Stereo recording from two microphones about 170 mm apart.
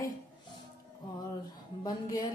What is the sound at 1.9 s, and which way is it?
Speech, 20° left (ahead or behind).